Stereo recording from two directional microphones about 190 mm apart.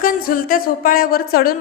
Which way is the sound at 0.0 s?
45° left (ahead or behind).